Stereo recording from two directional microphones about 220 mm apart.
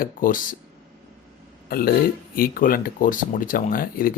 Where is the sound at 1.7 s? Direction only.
45° left (ahead or behind).